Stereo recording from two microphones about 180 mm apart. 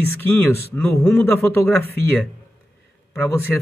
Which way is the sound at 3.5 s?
5° left (ahead or behind).